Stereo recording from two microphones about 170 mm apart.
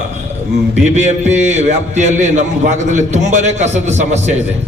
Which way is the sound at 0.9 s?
40° right (ahead or behind).